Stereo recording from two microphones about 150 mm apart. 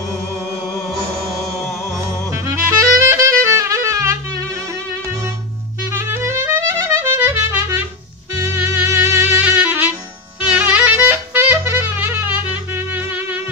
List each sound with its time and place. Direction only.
3.1 s music: 20° right (ahead or behind)
5.9 s music: 15° right (ahead or behind)
10.5 s clarinet: 10° right (ahead or behind)